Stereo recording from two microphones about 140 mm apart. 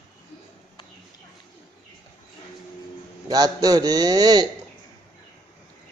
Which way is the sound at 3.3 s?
25° right (ahead or behind).